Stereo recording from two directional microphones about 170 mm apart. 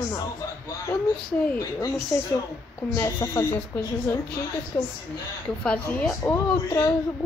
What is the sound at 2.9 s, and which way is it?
Speech, 15° left (ahead or behind).